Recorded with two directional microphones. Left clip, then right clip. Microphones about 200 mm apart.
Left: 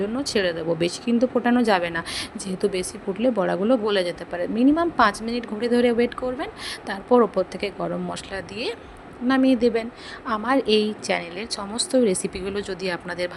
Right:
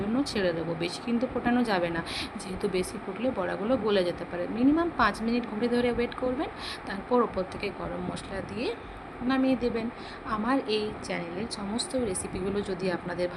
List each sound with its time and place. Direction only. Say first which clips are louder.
0.2 s a woman's voice: left 4 dB; 40° left (ahead or behind)